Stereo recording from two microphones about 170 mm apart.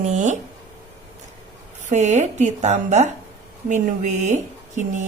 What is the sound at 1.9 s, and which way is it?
A woman's voice, 45° right (ahead or behind).